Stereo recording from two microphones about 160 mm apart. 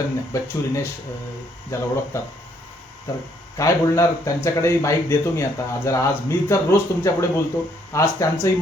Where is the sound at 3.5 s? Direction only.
20° left (ahead or behind).